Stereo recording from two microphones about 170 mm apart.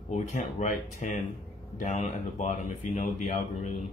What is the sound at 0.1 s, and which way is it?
Speech, 45° left (ahead or behind).